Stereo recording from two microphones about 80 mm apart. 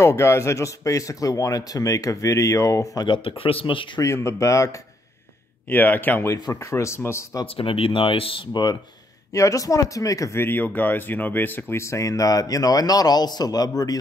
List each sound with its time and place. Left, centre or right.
0.0 s speech: left
3.6 s speech: left
4.0 s speech: left
5.7 s speech: left
6.6 s speech: left
7.5 s speech: left
9.3 s speech: left
10.4 s speech: left